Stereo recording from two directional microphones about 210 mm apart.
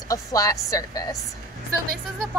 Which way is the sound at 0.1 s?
15° left (ahead or behind).